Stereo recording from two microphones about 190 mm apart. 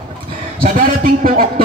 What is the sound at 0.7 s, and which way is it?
Speech, 45° right (ahead or behind).